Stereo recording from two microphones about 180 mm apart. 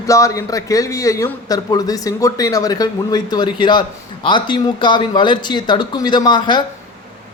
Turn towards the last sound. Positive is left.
turn(degrees=25)  # may be behind; listen again after turning